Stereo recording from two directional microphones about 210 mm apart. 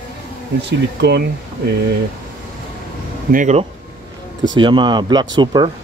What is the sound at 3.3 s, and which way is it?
Speech, 35° right (ahead or behind).